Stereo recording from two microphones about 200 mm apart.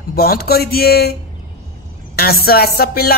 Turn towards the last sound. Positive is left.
turn(degrees=50)  # may be behind; listen again after turning